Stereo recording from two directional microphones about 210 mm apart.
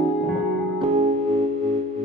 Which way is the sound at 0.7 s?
30° right (ahead or behind).